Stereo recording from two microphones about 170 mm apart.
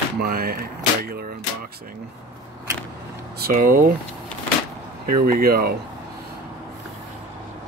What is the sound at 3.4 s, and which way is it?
Speech, 55° right (ahead or behind).